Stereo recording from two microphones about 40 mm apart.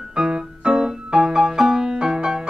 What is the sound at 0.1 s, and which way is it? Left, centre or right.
Music, right.